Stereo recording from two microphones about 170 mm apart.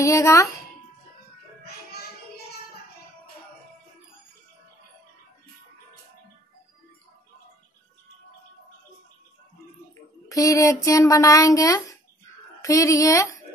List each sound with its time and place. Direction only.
0.0 s speech: 20° left (ahead or behind)
10.2 s speech: 20° left (ahead or behind)